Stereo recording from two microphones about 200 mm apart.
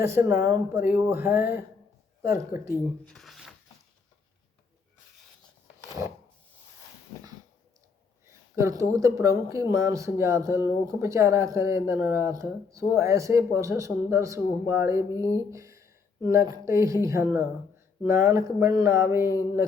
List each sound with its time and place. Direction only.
0.0 s speech: 15° right (ahead or behind)
3.0 s speech: 5° left (ahead or behind)
8.3 s speech: 15° right (ahead or behind)